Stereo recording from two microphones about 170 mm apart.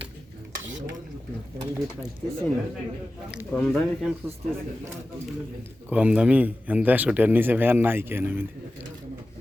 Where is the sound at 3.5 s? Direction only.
5° left (ahead or behind).